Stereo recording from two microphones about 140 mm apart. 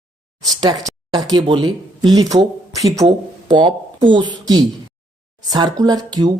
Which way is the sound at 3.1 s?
35° right (ahead or behind).